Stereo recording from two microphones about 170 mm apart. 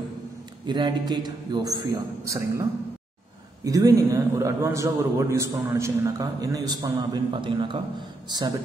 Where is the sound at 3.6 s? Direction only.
20° right (ahead or behind).